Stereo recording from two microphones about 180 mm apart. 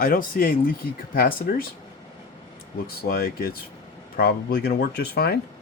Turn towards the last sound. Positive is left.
turn(degrees=60)  # may be behind; listen again after turning